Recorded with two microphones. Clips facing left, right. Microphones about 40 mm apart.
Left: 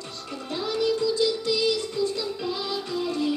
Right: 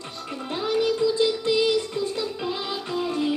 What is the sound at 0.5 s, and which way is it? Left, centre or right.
Music, right.